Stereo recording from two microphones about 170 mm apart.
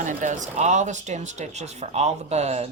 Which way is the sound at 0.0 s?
45° right (ahead or behind).